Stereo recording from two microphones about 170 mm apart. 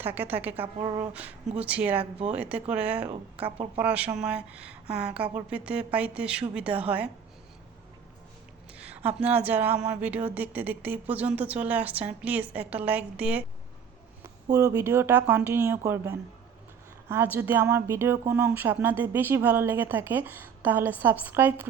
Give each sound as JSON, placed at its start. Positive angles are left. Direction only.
{"t": 0.0, "sound": "speech", "side_deg": -10}
{"t": 0.5, "sound": "speech", "side_deg": -30}
{"t": 1.5, "sound": "speech", "side_deg": -10}
{"t": 2.0, "sound": "a woman's voice", "side_deg": -35}
{"t": 2.3, "sound": "speech", "side_deg": -10}
{"t": 3.1, "sound": "a woman's voice", "side_deg": -35}
{"t": 3.8, "sound": "speech", "side_deg": -10}
{"t": 8.8, "sound": "speech", "side_deg": -10}
{"t": 14.4, "sound": "speech", "side_deg": -20}